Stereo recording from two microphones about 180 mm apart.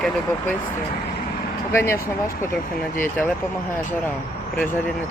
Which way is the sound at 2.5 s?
55° left (ahead or behind).